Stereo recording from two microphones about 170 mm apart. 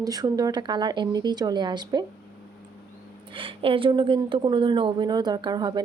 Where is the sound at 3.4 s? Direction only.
30° right (ahead or behind).